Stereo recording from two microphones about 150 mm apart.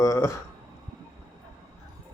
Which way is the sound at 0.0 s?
20° left (ahead or behind).